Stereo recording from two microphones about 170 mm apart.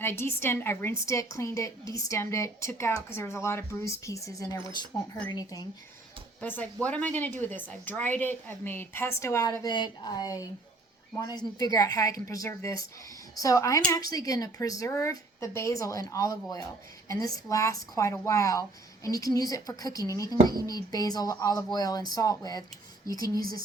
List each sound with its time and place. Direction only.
0.0 s a woman's voice: 15° left (ahead or behind)
6.4 s a woman's voice: 10° left (ahead or behind)